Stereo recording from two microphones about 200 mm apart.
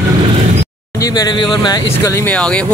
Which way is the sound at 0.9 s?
20° left (ahead or behind).